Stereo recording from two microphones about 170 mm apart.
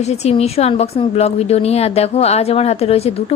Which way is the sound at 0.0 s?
40° left (ahead or behind).